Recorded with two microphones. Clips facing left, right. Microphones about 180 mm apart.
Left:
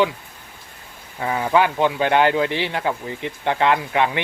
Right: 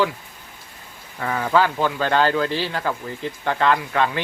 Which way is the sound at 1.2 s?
20° left (ahead or behind).